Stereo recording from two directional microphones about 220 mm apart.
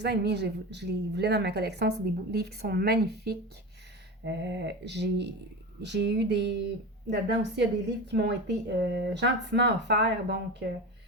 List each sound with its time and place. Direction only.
0.0 s a woman's voice: 50° right (ahead or behind)